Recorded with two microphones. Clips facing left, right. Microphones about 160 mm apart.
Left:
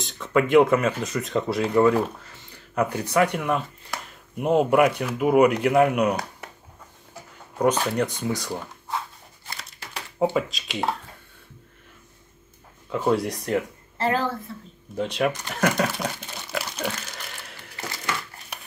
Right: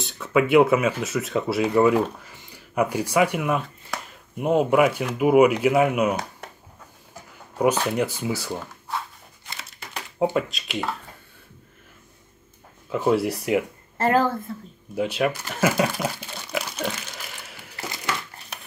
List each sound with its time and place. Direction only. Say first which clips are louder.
0.0 s speech: right 1 dB; 5° right (ahead or behind)
7.5 s speech: right 1 dB; 10° right (ahead or behind)
9.6 s crumpling: right 3 dB; 5° left (ahead or behind)
10.3 s speech: right 1 dB; centre (ahead or behind)
12.9 s speech: right 2 dB; 5° right (ahead or behind)
13.9 s speech: right 4 dB; 45° right (ahead or behind)
15.0 s speech: right 1 dB; 5° right (ahead or behind)
16.9 s a sound: even; 5° right (ahead or behind)